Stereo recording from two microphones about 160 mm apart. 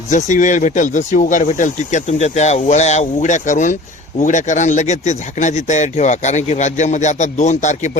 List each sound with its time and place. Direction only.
0.1 s speech: 50° left (ahead or behind)